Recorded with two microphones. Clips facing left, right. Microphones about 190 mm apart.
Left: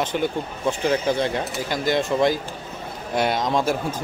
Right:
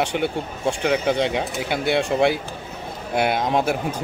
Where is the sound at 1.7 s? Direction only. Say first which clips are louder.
Right 1 dB; 70° right (ahead or behind).